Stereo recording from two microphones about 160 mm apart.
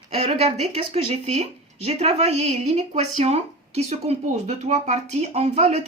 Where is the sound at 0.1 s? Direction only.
40° right (ahead or behind).